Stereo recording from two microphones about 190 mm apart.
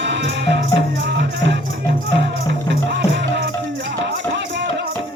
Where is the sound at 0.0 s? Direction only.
70° right (ahead or behind).